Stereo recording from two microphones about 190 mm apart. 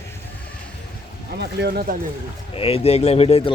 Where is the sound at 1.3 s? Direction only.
55° right (ahead or behind).